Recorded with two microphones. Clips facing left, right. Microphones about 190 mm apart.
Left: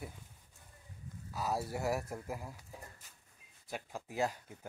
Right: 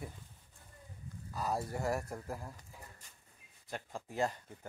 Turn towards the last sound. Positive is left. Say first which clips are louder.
# even
turn(degrees=5)  # may be behind; listen again after turning